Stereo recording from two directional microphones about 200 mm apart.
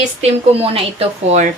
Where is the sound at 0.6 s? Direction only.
30° right (ahead or behind).